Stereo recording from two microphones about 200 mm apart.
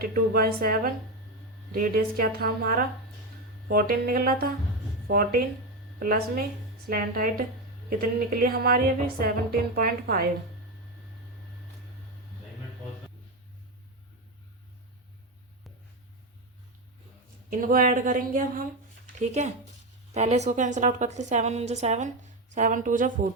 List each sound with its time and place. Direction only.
0.0 s a woman's voice: 50° right (ahead or behind)
8.4 s a woman's voice: 50° right (ahead or behind)
17.5 s a woman's voice: 45° right (ahead or behind)